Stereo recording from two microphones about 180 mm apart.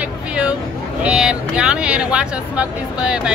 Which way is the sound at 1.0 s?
5° right (ahead or behind).